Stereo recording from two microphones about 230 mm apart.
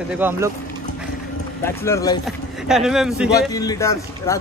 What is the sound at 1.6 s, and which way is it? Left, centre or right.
Speech, centre.